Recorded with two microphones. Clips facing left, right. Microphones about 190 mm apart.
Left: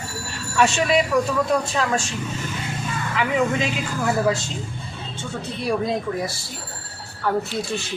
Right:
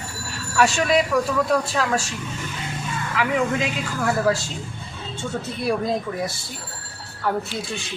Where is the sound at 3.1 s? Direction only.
Centre (ahead or behind).